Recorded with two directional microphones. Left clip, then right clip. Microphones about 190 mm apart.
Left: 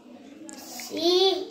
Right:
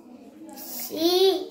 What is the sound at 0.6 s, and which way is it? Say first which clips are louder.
Child singing: right 2 dB; 20° right (ahead or behind).